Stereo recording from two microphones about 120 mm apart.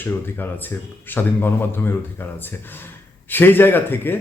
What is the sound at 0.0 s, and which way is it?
Speech, 15° left (ahead or behind).